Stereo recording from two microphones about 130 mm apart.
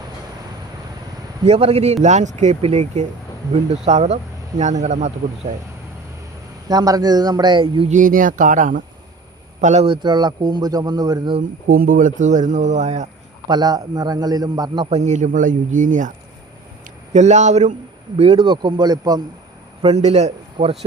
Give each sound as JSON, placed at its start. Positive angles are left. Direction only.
{"t": 1.5, "sound": "a man's voice", "side_deg": -50}
{"t": 2.0, "sound": "speech", "side_deg": -65}
{"t": 6.7, "sound": "speech", "side_deg": -30}
{"t": 7.9, "sound": "speech", "side_deg": -85}
{"t": 9.6, "sound": "speech", "side_deg": -65}
{"t": 9.8, "sound": "speech", "side_deg": -35}
{"t": 11.8, "sound": "speech", "side_deg": -90}
{"t": 13.5, "sound": "a man's voice", "side_deg": -30}
{"t": 14.8, "sound": "speech", "side_deg": -60}
{"t": 17.1, "sound": "speech", "side_deg": -60}
{"t": 18.2, "sound": "a man's voice", "side_deg": -50}
{"t": 18.4, "sound": "speech", "side_deg": -35}
{"t": 19.8, "sound": "a man's voice", "side_deg": -55}